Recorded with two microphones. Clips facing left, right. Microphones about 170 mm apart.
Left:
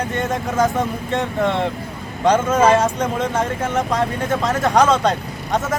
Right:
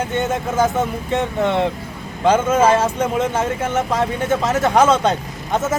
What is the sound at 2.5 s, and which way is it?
A man's voice, 5° right (ahead or behind).